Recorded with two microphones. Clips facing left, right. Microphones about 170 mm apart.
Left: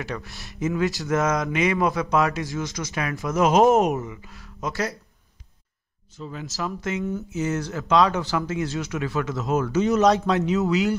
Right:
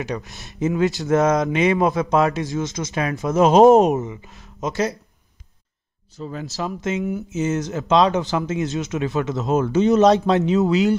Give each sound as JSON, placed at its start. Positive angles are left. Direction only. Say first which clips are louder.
{"t": 0.0, "sound": "speech", "louder": "right 4 dB", "side_deg": -20}
{"t": 6.1, "sound": "speech", "louder": "right 4 dB", "side_deg": -40}
{"t": 6.5, "sound": "speech", "louder": "right 3 dB", "side_deg": -20}